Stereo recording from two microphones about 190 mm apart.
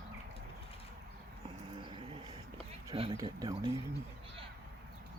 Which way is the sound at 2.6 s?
30° right (ahead or behind).